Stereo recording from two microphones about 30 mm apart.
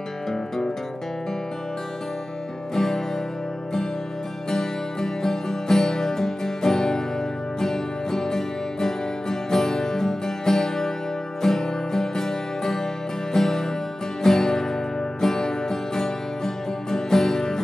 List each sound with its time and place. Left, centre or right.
2.7 s music: centre
4.5 s music: centre